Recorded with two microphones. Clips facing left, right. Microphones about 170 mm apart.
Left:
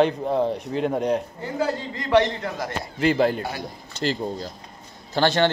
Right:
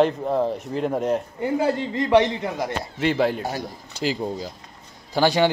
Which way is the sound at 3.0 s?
Centre (ahead or behind).